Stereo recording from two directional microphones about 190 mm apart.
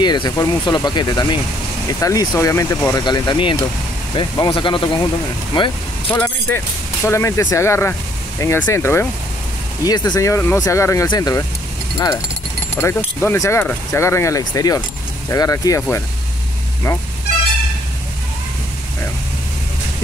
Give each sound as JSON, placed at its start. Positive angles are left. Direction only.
{"t": 0.0, "sound": "speech", "side_deg": 20}
{"t": 6.1, "sound": "speech", "side_deg": 10}
{"t": 12.7, "sound": "speech", "side_deg": 10}